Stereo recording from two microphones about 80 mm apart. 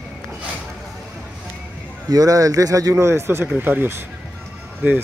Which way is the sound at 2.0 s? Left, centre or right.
Right.